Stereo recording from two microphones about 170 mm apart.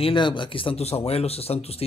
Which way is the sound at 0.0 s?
30° left (ahead or behind).